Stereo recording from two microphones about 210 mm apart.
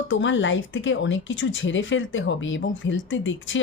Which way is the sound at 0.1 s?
60° left (ahead or behind).